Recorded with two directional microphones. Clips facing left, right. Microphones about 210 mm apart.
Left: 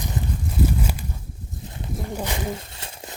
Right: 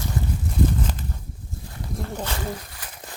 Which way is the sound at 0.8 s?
10° left (ahead or behind).